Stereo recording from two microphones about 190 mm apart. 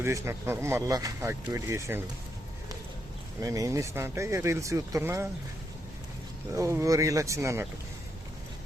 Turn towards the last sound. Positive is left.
turn(degrees=-15)  # may be behind; listen again after turning